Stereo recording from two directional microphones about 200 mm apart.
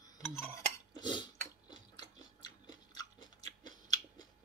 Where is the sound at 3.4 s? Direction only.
20° left (ahead or behind).